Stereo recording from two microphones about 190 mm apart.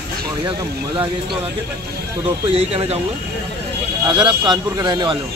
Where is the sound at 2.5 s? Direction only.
30° right (ahead or behind).